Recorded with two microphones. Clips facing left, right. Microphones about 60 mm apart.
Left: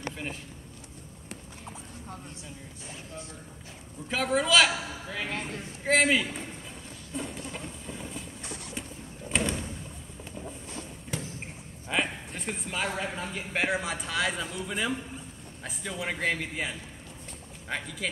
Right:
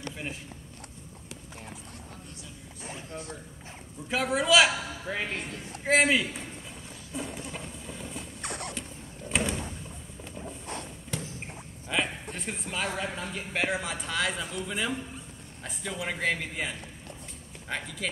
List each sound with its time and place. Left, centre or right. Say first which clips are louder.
4.1 s speech: right 1 dB; centre
4.6 s a man's voice: right 1 dB; right
5.9 s speech: even; centre
7.1 s vehicle: even; centre
8.4 s vehicle: right 4 dB; right
9.3 s sliding door: even; centre
11.9 s speech: even; centre